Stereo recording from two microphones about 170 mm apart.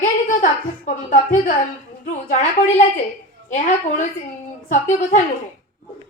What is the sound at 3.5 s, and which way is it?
A woman's voice, 45° left (ahead or behind).